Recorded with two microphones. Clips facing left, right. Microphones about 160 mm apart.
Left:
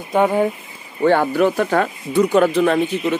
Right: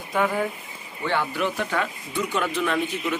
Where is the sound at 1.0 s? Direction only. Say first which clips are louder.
Left 10 dB; 45° left (ahead or behind).